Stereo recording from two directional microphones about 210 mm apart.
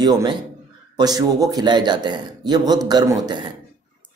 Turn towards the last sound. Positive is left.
turn(degrees=-20)  # may be behind; listen again after turning